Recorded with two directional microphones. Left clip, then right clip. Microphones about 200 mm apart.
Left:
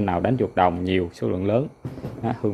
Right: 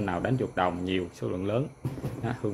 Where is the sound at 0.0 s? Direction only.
30° left (ahead or behind).